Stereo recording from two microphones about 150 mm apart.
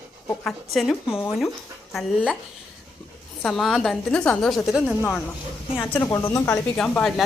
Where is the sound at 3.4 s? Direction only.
Centre (ahead or behind).